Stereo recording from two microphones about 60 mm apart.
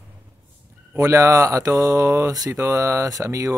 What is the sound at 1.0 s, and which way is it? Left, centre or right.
Speech, right.